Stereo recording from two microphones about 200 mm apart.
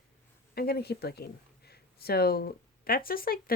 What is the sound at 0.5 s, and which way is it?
Speech, 50° left (ahead or behind).